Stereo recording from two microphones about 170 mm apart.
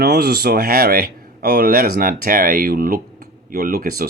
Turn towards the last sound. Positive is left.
turn(degrees=-60)  # may be behind; listen again after turning